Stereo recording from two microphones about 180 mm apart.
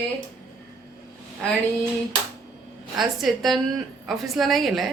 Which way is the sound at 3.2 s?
Centre (ahead or behind).